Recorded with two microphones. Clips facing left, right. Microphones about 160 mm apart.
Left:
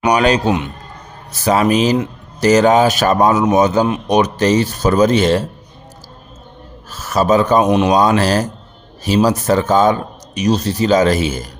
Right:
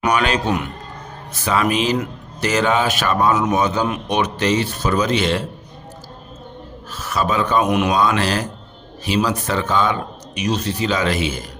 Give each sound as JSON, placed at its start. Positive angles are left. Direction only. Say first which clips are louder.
{"t": 0.1, "sound": "speech", "louder": "left 6 dB", "side_deg": 35}
{"t": 6.9, "sound": "speech", "louder": "left 7 dB", "side_deg": 40}